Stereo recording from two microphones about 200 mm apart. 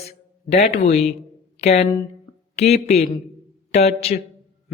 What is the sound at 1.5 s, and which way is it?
Speech, 30° left (ahead or behind).